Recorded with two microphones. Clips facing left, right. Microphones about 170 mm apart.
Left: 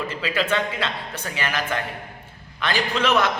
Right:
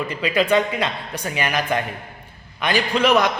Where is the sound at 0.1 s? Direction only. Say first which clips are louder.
Right 7 dB; 15° right (ahead or behind).